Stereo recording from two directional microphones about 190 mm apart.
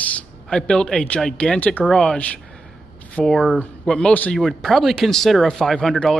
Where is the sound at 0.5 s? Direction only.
5° left (ahead or behind).